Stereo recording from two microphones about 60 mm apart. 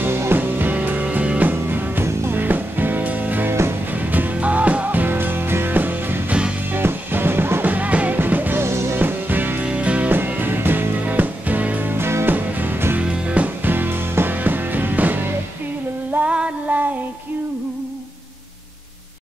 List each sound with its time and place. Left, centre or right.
0.0 s music: right
1.5 s music: right
2.4 s music: right
8.6 s music: right
8.9 s music: right
9.7 s music: right
12.3 s music: right
13.0 s music: right
16.1 s female singing: right
16.3 s a sound: right